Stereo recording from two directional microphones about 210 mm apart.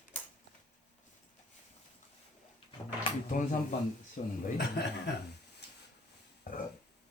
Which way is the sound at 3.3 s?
40° left (ahead or behind).